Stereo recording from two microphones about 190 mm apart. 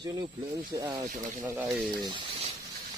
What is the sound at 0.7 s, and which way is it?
Speech, 20° right (ahead or behind).